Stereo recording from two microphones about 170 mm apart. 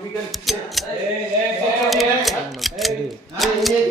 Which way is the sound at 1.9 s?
Centre (ahead or behind).